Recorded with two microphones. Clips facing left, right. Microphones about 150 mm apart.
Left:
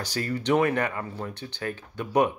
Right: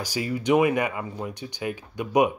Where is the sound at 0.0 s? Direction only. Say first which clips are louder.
Right 2 dB; 10° right (ahead or behind).